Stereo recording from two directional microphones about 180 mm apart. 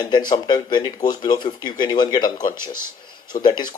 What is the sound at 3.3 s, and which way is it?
Speech, 25° left (ahead or behind).